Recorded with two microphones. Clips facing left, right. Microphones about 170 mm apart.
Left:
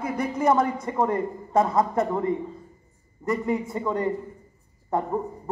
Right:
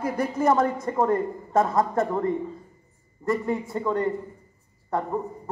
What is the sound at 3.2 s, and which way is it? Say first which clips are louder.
Speech: right 1 dB; 15° left (ahead or behind).